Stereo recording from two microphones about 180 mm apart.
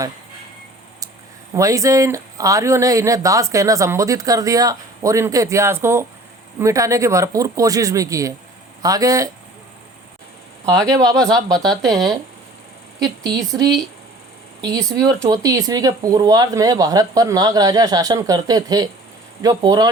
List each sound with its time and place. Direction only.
1.5 s speech: 15° right (ahead or behind)
11.3 s speech: 20° right (ahead or behind)
11.8 s speech: centre (ahead or behind)
13.0 s speech: 20° right (ahead or behind)
14.6 s speech: 20° right (ahead or behind)